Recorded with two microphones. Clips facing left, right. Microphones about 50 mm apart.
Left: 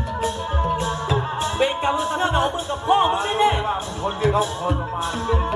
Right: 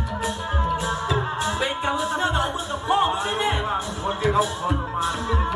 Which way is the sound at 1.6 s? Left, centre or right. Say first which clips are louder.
Left 7 dB; left.